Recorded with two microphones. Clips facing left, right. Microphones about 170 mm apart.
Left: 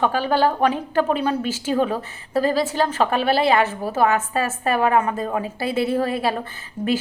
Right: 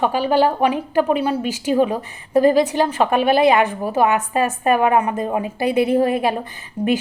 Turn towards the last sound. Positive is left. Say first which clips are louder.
# right 4 dB
turn(degrees=-10)  # may be behind; listen again after turning